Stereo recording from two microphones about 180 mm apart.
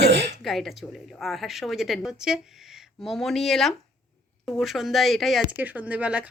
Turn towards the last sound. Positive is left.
turn(degrees=-10)  # may be behind; listen again after turning